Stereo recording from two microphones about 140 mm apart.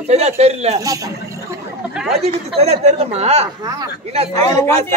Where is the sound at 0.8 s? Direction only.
25° right (ahead or behind).